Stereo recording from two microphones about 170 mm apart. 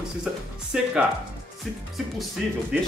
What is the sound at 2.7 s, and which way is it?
Speech, centre (ahead or behind).